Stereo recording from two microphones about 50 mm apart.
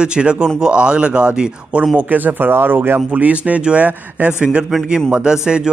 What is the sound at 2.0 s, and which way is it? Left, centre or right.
Speech, right.